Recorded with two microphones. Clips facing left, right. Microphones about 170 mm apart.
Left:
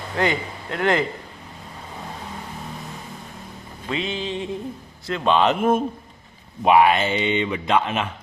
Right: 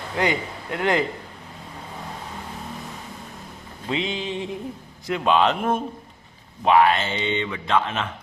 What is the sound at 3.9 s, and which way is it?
Speech, 20° right (ahead or behind).